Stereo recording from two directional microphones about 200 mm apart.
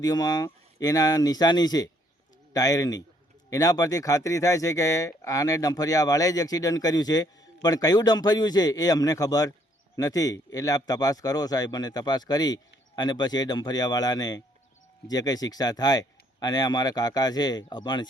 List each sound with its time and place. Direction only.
0.0 s a man's voice: 20° left (ahead or behind)